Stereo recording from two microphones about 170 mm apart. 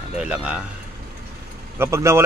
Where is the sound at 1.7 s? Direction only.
15° right (ahead or behind).